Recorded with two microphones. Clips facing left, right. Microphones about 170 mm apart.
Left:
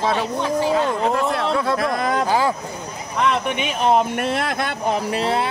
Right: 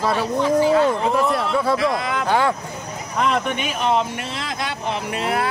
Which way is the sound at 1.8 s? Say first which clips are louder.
Left 1 dB; 45° left (ahead or behind).